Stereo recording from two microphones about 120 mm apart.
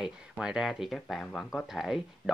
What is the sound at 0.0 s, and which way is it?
Speech, 5° right (ahead or behind).